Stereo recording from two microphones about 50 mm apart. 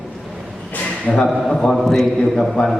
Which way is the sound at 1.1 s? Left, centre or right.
Centre.